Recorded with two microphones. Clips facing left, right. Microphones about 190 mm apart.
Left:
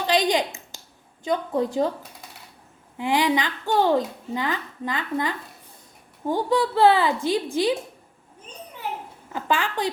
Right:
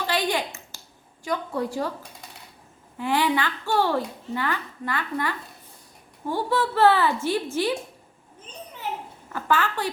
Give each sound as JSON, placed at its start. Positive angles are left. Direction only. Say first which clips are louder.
{"t": 0.1, "sound": "a sound", "louder": "left 6 dB", "side_deg": 15}
{"t": 1.2, "sound": "a woman's voice", "louder": "left 4 dB", "side_deg": 20}
{"t": 3.0, "sound": "a woman's voice", "louder": "left 1 dB", "side_deg": 15}
{"t": 9.3, "sound": "a woman's voice", "louder": "even", "side_deg": 15}